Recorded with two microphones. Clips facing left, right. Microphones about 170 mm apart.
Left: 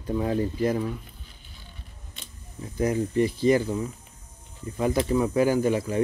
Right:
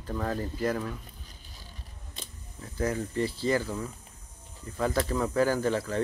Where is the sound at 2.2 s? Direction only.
35° right (ahead or behind).